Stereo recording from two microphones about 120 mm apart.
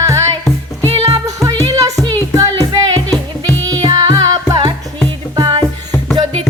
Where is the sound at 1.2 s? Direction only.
30° right (ahead or behind).